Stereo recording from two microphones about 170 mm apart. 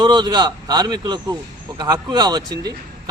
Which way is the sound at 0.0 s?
25° right (ahead or behind).